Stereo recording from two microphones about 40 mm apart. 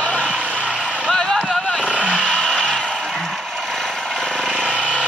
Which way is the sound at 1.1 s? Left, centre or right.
Centre.